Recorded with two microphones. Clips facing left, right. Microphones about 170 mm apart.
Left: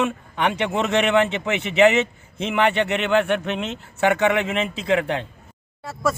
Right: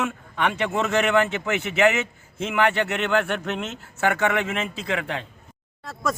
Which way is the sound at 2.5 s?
15° left (ahead or behind).